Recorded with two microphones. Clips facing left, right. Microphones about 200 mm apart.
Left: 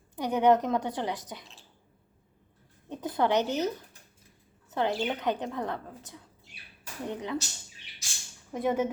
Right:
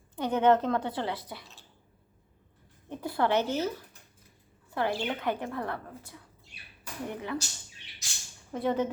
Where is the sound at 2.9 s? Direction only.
20° left (ahead or behind).